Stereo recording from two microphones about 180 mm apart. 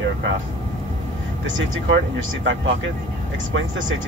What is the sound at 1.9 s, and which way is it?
Speech, 90° right.